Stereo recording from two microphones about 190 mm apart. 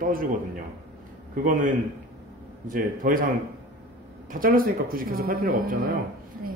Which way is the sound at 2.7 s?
45° right (ahead or behind).